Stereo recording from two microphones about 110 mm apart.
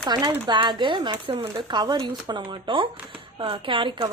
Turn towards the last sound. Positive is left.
turn(degrees=-50)  # may be behind; listen again after turning